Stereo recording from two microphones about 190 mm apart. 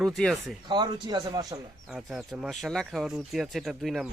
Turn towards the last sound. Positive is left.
turn(degrees=0)  # may be behind; listen again after turning